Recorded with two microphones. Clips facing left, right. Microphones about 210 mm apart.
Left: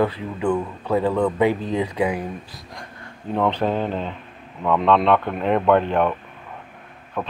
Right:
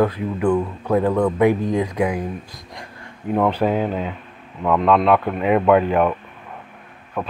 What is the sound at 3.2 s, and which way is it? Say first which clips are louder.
Speech: right 3 dB; 10° right (ahead or behind).